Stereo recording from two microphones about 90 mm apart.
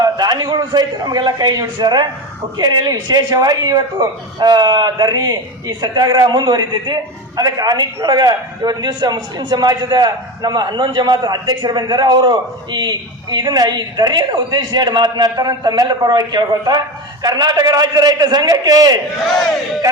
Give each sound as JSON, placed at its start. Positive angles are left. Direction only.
{"t": 0.0, "sound": "a man's voice", "side_deg": -45}
{"t": 19.2, "sound": "battle cry", "side_deg": 0}
{"t": 19.8, "sound": "speech", "side_deg": -40}